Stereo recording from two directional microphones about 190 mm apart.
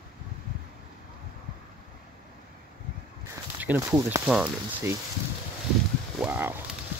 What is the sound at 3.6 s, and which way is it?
Speech, 10° right (ahead or behind).